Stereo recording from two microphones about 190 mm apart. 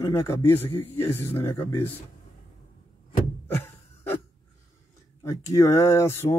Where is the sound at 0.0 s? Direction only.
15° left (ahead or behind).